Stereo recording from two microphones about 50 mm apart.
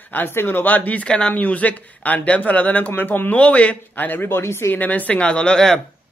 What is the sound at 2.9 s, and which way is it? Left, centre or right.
Speech, left.